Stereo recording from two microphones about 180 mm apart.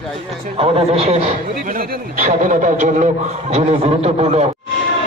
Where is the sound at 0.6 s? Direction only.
35° right (ahead or behind).